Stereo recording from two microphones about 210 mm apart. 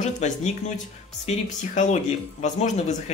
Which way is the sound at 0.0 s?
35° left (ahead or behind).